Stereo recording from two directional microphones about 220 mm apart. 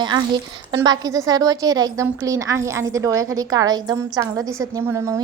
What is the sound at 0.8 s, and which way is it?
A woman's voice, 15° right (ahead or behind).